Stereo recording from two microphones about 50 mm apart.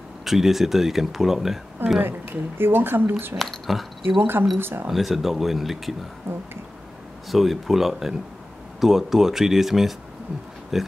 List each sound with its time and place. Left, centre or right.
0.2 s speech: centre
2.0 s speech: right
3.3 s speech: centre
4.2 s speech: right
4.8 s speech: centre
7.2 s speech: centre